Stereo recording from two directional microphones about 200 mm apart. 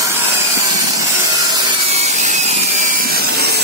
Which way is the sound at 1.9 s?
35° right (ahead or behind).